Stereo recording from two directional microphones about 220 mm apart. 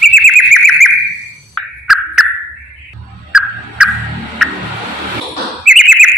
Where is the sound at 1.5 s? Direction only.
Centre (ahead or behind).